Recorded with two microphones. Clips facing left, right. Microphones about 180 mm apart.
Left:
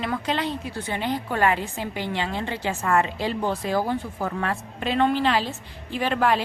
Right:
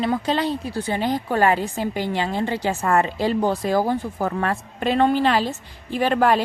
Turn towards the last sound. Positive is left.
turn(degrees=-45)  # may be behind; listen again after turning